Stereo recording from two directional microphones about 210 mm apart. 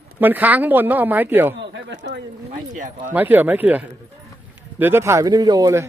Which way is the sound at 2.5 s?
35° right (ahead or behind).